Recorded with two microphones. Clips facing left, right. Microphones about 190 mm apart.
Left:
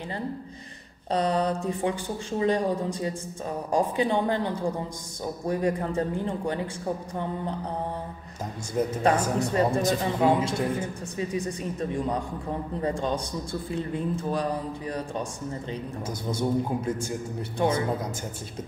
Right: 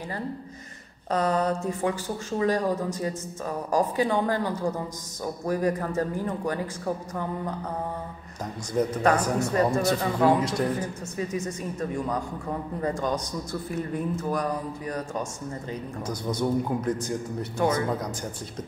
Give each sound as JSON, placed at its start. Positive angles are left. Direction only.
{"t": 1.1, "sound": "a sound", "side_deg": 30}
{"t": 1.5, "sound": "speech", "side_deg": 15}
{"t": 2.3, "sound": "a man's voice", "side_deg": 25}
{"t": 3.7, "sound": "a man's voice", "side_deg": 20}
{"t": 8.9, "sound": "a man's voice", "side_deg": 25}